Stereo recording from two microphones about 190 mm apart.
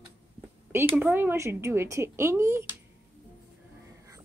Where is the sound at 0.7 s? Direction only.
10° right (ahead or behind).